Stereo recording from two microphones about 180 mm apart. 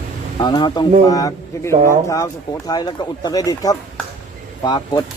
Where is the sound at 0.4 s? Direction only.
25° left (ahead or behind).